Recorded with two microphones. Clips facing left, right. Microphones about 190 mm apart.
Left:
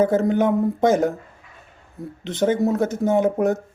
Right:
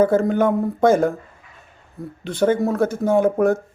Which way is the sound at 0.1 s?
20° left (ahead or behind).